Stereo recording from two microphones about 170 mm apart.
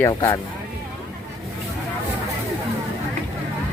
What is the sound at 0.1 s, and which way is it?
Speech, 20° left (ahead or behind).